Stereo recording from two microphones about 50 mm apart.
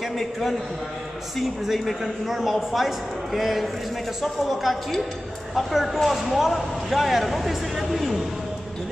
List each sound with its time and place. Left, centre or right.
0.2 s speech: centre
1.7 s speech: centre